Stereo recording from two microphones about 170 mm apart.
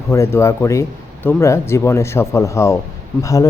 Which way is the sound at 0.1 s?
15° left (ahead or behind).